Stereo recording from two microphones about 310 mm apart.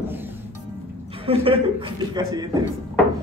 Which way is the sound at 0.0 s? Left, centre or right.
Centre.